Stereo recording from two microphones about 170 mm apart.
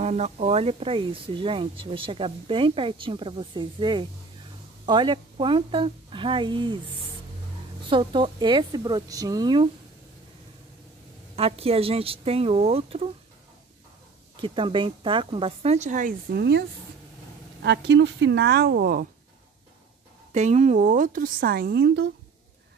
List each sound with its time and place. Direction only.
0.0 s a woman's voice: 40° right (ahead or behind)
7.9 s a woman's voice: 30° right (ahead or behind)
11.3 s speech: 35° right (ahead or behind)
14.4 s speech: 30° right (ahead or behind); by 16.2 s 50° right (ahead or behind)
16.3 s speech: 90° right; by 19.0 s 60° right (ahead or behind)
20.3 s speech: 40° right (ahead or behind); by 22.0 s 80° right